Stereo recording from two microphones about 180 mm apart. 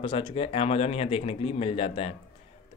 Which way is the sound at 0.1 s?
30° left (ahead or behind).